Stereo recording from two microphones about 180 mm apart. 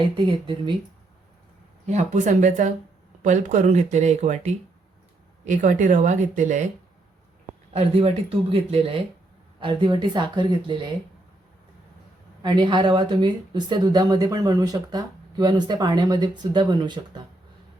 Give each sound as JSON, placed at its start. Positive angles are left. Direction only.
{"t": 0.2, "sound": "speech", "side_deg": -25}
{"t": 1.9, "sound": "speech", "side_deg": -40}
{"t": 7.7, "sound": "speech", "side_deg": -35}
{"t": 12.4, "sound": "speech", "side_deg": -25}